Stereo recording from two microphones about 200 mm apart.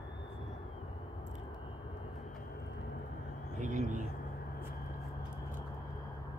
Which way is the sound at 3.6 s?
40° right (ahead or behind).